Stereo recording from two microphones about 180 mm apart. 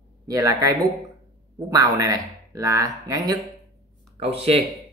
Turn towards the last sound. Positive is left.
turn(degrees=-30)  # may be behind; listen again after turning